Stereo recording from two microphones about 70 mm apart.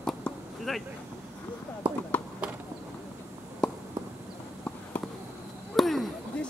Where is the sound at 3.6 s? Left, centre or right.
Centre.